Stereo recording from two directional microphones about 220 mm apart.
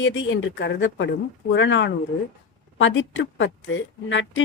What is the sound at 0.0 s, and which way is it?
A woman's voice, 60° left (ahead or behind).